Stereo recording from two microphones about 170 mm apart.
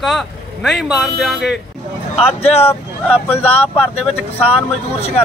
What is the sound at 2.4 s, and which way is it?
Speech, 35° left (ahead or behind).